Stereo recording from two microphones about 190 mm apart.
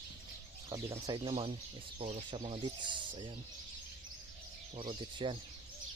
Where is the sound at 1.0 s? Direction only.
20° right (ahead or behind).